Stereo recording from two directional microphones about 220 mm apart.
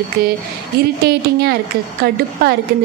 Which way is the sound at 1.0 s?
45° right (ahead or behind).